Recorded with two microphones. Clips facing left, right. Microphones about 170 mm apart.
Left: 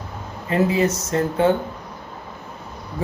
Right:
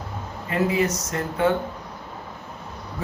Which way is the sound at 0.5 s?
30° left (ahead or behind).